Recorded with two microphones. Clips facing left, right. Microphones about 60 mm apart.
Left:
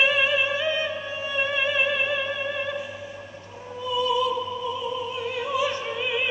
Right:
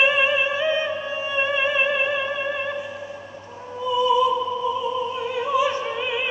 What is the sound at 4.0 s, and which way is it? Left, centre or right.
Opera, right.